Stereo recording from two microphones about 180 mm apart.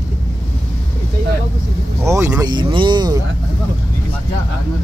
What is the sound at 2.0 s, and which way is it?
Speech, 15° right (ahead or behind).